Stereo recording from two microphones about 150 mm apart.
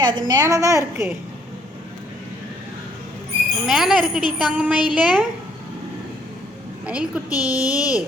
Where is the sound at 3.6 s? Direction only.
Centre (ahead or behind).